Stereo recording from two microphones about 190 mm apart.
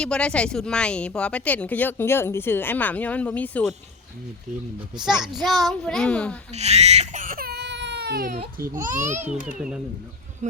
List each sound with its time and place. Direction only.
0.0 s speech: 5° left (ahead or behind)
5.2 s a child's voice: centre (ahead or behind)
6.5 s speech: 35° right (ahead or behind); by 8.8 s 50° right (ahead or behind)
8.9 s a child's voice: 40° right (ahead or behind)
9.6 s a child's voice: 5° right (ahead or behind)